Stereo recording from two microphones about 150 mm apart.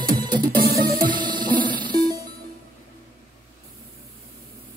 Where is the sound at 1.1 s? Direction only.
30° right (ahead or behind).